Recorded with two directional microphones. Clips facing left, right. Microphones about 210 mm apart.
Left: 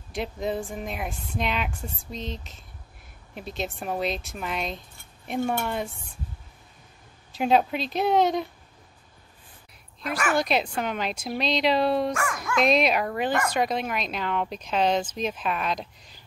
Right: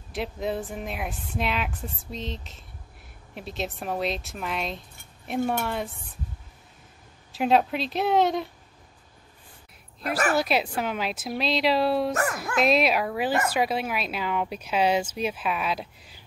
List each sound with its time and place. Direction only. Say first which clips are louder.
0.1 s speech: even; centre (ahead or behind)
7.3 s speech: even; centre (ahead or behind)
10.0 s a woman's voice: right 2 dB; 35° right (ahead or behind)
10.3 s speech: even; 5° right (ahead or behind)
12.1 s a woman's voice: right 2 dB; 40° right (ahead or behind)
12.5 s a woman's voice: even; 5° right (ahead or behind)